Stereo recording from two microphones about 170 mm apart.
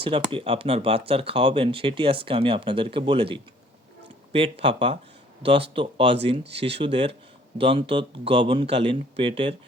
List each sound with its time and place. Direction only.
0.0 s speech: 30° right (ahead or behind)